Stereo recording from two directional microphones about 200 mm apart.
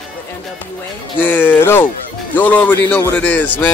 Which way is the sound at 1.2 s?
10° left (ahead or behind).